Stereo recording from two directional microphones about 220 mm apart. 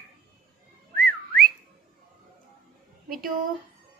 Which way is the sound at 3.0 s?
40° right (ahead or behind).